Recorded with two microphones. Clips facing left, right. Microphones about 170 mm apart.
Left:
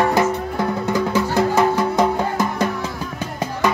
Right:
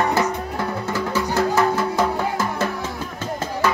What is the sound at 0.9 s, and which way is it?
Music, 15° left (ahead or behind).